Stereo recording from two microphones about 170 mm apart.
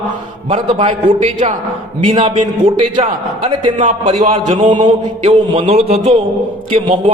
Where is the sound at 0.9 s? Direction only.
50° right (ahead or behind).